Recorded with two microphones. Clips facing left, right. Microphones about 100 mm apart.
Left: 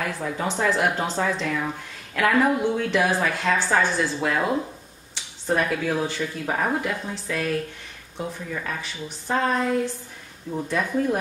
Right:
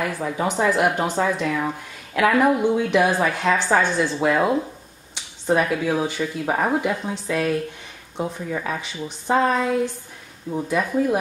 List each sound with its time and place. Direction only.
0.0 s speech: 5° right (ahead or behind)
8.2 s speech: 25° right (ahead or behind)
8.6 s speech: 10° right (ahead or behind)